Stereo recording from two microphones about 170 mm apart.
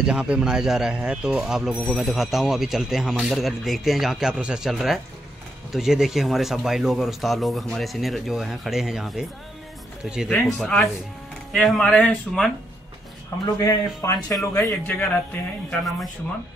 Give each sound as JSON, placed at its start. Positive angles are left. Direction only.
{"t": 0.0, "sound": "speech", "side_deg": -5}
{"t": 13.3, "sound": "a man's voice", "side_deg": 20}